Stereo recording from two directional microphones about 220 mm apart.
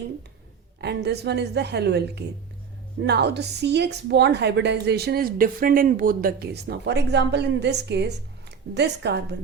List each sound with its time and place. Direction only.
0.8 s a woman's voice: 50° right (ahead or behind)